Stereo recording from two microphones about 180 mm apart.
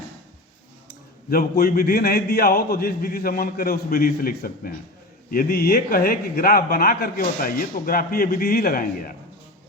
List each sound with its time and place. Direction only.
1.3 s speech: 55° left (ahead or behind)